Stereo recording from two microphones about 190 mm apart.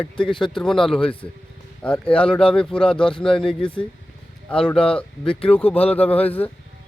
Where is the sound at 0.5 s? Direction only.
Centre (ahead or behind).